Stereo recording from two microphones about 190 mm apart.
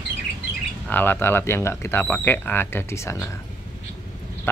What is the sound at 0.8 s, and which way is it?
Speech, 10° left (ahead or behind).